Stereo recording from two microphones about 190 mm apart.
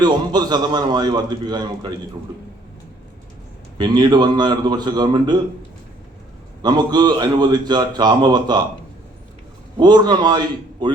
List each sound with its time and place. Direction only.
0.0 s a man's voice: 20° right (ahead or behind)
3.8 s a man's voice: 20° right (ahead or behind)
6.6 s a man's voice: 20° right (ahead or behind)
9.7 s a man's voice: 20° right (ahead or behind)